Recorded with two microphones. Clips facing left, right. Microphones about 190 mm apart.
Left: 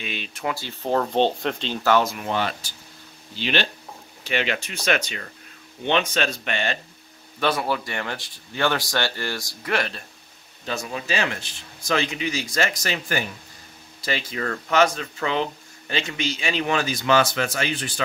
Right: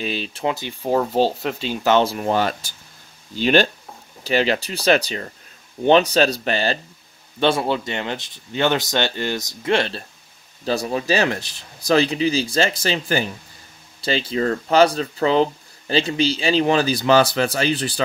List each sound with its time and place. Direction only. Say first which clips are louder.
0.0 s speech: right 6 dB; 35° right (ahead or behind)
0.6 s speech: right 1 dB; 10° right (ahead or behind)
1.9 s speech: right 3 dB; 30° right (ahead or behind)